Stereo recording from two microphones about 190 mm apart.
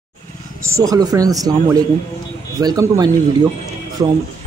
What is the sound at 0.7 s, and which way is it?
Speech, 15° right (ahead or behind).